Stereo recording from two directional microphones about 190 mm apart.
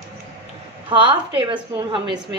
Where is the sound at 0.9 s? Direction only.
25° right (ahead or behind).